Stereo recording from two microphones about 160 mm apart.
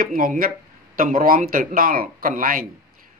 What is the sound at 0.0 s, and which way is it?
A man's voice, 60° right (ahead or behind).